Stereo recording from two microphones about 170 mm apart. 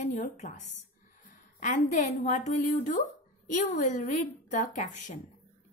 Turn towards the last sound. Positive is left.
turn(degrees=45)  # may be behind; listen again after turning